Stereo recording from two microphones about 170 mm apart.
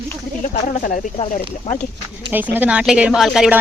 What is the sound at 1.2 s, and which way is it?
Speech, 35° left (ahead or behind).